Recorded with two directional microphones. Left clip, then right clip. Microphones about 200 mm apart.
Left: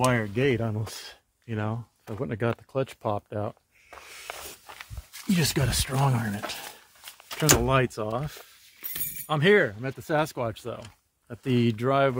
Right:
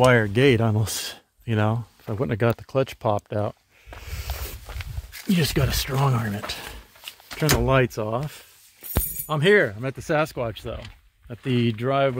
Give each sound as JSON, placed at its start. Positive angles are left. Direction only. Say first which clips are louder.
{"t": 0.1, "sound": "speech", "louder": "right 7 dB", "side_deg": -60}
{"t": 2.2, "sound": "speech", "louder": "right 6 dB", "side_deg": -35}
{"t": 4.0, "sound": "walk", "louder": "right 2 dB", "side_deg": -20}
{"t": 5.3, "sound": "speech", "louder": "right 3 dB", "side_deg": -5}
{"t": 7.6, "sound": "speech", "louder": "right 4 dB", "side_deg": -15}
{"t": 9.7, "sound": "speech", "louder": "right 4 dB", "side_deg": -15}